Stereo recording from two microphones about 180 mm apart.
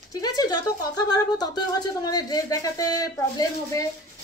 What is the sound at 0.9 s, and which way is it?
Speech, 20° left (ahead or behind).